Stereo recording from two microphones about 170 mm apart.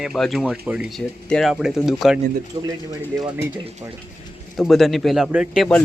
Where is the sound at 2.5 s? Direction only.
20° right (ahead or behind).